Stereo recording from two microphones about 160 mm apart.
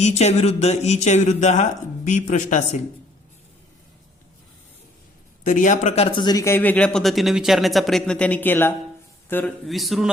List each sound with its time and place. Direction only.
0.0 s speech: 45° left (ahead or behind)
5.4 s speech: 55° left (ahead or behind); by 8.7 s 10° left (ahead or behind)
9.6 s a man's voice: centre (ahead or behind)